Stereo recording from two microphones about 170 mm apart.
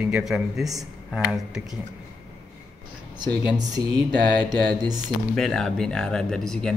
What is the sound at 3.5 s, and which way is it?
Speech, 20° right (ahead or behind).